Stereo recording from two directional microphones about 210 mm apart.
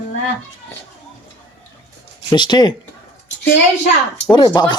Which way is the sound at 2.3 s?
20° left (ahead or behind).